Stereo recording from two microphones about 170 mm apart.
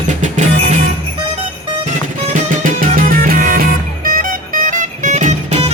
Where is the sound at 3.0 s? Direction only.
55° right (ahead or behind).